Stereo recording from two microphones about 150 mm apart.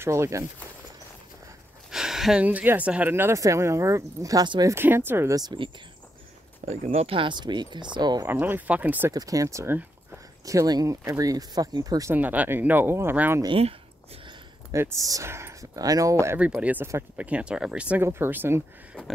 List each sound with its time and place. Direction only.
0.0 s speech: 20° right (ahead or behind)
1.9 s speech: 5° right (ahead or behind)
6.7 s speech: 45° right (ahead or behind); by 8.3 s 30° right (ahead or behind)
8.3 s speech: 10° right (ahead or behind)
9.1 s speech: 25° right (ahead or behind)
12.2 s speech: 10° right (ahead or behind)
13.4 s speech: 35° right (ahead or behind)
14.7 s speech: 20° right (ahead or behind)
16.3 s speech: 10° right (ahead or behind)